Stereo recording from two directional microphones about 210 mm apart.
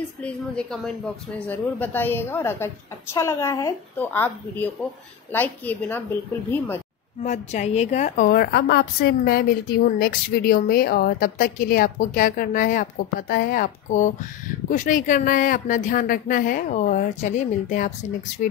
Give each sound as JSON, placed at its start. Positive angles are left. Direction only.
{"t": 0.2, "sound": "a woman's voice", "side_deg": 5}
{"t": 7.2, "sound": "a woman's voice", "side_deg": 35}